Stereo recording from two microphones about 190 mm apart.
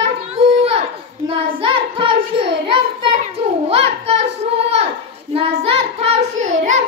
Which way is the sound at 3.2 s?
30° right (ahead or behind).